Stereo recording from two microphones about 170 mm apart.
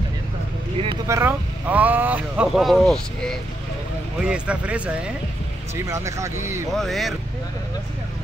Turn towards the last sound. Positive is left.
turn(degrees=0)  # may be behind; listen again after turning